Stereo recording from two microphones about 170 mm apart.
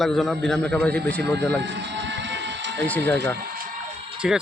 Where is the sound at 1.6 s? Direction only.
90° right.